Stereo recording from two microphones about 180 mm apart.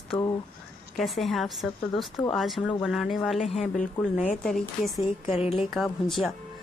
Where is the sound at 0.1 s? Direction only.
25° left (ahead or behind).